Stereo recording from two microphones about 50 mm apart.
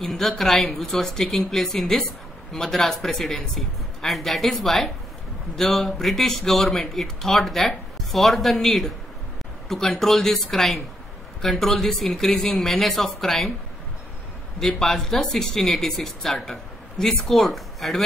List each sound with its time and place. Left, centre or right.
0.0 s a woman's voice: centre
14.6 s a woman's voice: centre